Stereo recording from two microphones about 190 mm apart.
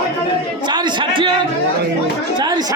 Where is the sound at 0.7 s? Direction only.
25° right (ahead or behind).